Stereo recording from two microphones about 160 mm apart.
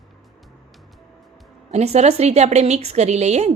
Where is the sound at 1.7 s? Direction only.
45° right (ahead or behind).